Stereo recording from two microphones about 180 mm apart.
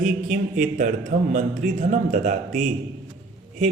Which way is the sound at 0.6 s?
45° right (ahead or behind).